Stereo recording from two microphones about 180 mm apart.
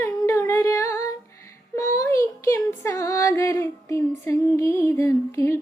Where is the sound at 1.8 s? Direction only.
15° left (ahead or behind).